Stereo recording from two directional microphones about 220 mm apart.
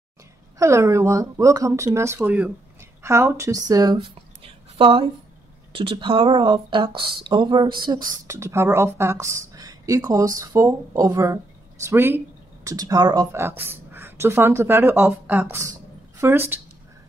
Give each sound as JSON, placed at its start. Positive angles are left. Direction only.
{"t": 0.6, "sound": "a woman's voice", "side_deg": -15}